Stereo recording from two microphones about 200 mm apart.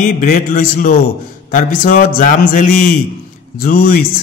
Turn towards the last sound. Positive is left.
turn(degrees=45)  # may be behind; listen again after turning